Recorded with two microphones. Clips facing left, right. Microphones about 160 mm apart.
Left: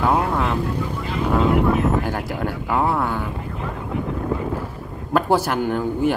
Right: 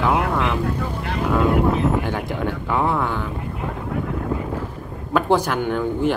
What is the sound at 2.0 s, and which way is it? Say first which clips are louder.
Speech: right 1 dB; 5° left (ahead or behind).